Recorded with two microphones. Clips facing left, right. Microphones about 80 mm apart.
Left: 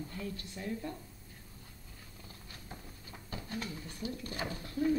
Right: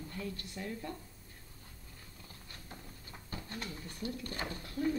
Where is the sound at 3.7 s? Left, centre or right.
Centre.